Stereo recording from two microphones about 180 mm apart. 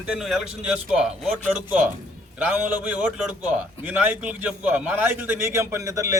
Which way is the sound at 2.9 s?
10° right (ahead or behind).